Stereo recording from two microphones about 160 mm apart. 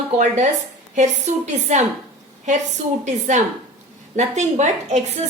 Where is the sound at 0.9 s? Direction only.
45° right (ahead or behind).